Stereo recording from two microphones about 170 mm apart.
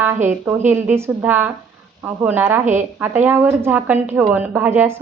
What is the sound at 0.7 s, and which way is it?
Speech, 15° right (ahead or behind).